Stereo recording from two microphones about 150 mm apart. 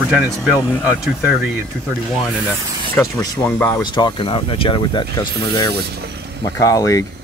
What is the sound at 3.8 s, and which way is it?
Speech, 30° left (ahead or behind).